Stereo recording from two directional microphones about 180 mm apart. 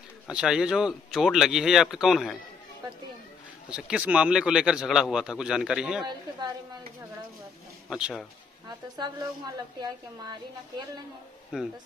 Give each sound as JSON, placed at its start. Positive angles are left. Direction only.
{"t": 0.3, "sound": "speech", "side_deg": -5}
{"t": 3.7, "sound": "speech", "side_deg": -5}
{"t": 7.9, "sound": "speech", "side_deg": 0}
{"t": 8.6, "sound": "a woman's voice", "side_deg": -25}
{"t": 11.5, "sound": "speech", "side_deg": -5}